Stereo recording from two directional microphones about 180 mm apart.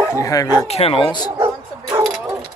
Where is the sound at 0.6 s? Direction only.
35° left (ahead or behind).